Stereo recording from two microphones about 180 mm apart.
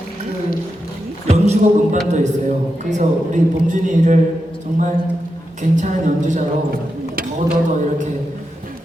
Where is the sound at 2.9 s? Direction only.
45° right (ahead or behind).